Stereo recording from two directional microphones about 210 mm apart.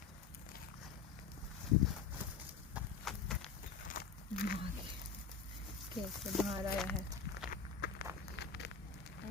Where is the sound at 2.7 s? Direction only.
Centre (ahead or behind).